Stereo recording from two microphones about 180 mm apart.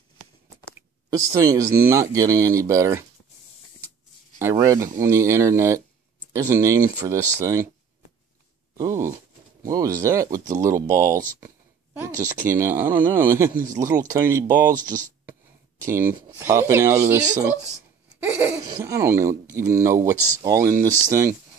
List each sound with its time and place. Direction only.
1.1 s speech: 20° right (ahead or behind)
4.4 s speech: 15° right (ahead or behind)
8.7 s speech: 15° right (ahead or behind)
15.8 s speech: 15° right (ahead or behind)
18.3 s laughter: 10° right (ahead or behind)
18.8 s speech: 15° right (ahead or behind)